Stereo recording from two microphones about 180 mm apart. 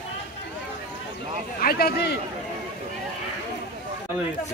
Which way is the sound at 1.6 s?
60° left (ahead or behind).